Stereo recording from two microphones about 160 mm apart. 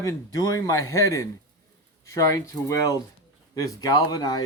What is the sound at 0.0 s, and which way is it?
A man's voice, 20° left (ahead or behind).